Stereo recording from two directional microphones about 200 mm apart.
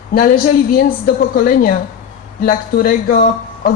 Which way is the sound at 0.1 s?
45° left (ahead or behind).